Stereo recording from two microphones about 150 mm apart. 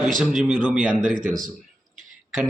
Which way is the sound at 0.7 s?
60° right (ahead or behind).